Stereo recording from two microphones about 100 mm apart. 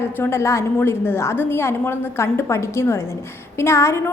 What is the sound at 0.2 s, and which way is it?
A woman's voice, 25° left (ahead or behind).